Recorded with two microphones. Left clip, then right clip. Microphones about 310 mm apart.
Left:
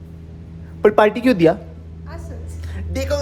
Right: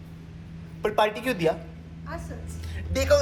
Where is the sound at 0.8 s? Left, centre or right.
Left.